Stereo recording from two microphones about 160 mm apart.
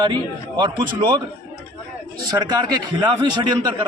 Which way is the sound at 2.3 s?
25° right (ahead or behind).